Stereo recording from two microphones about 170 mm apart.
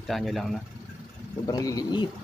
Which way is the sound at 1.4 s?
20° left (ahead or behind).